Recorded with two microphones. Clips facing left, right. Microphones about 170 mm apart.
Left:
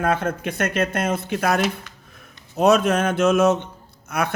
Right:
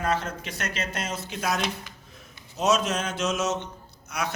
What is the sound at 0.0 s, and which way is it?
A man's voice, 55° left (ahead or behind).